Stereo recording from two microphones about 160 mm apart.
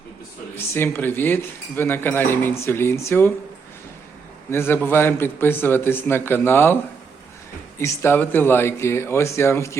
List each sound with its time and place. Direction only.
0.5 s speech: 15° left (ahead or behind)
4.5 s speech: 15° left (ahead or behind)
7.8 s speech: 15° left (ahead or behind)